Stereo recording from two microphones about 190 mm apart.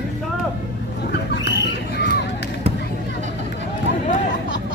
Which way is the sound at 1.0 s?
60° left (ahead or behind).